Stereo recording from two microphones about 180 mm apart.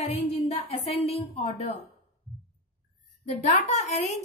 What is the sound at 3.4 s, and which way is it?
Speech, 40° left (ahead or behind).